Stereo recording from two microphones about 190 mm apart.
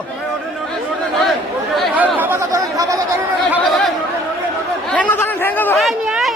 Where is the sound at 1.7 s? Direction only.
5° right (ahead or behind).